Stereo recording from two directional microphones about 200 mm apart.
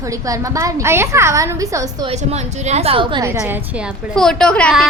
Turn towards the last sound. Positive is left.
turn(degrees=5)  # may be behind; listen again after turning